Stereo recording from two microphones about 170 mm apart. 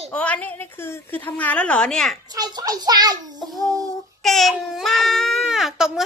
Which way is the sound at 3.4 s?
Centre (ahead or behind).